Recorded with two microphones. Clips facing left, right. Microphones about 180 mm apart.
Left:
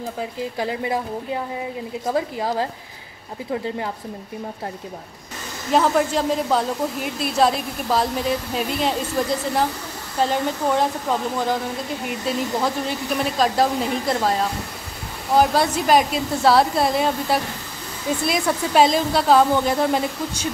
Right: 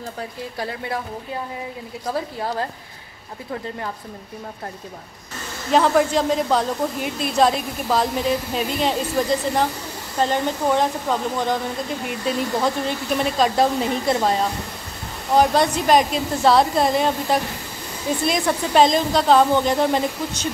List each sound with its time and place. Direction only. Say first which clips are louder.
0.6 s speech: left 3 dB; 20° left (ahead or behind)
2.0 s speech: left 2 dB; 20° left (ahead or behind)
5.7 s a woman's voice: right 1 dB; centre (ahead or behind)